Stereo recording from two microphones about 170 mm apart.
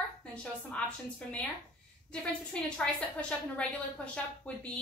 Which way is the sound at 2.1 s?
5° left (ahead or behind).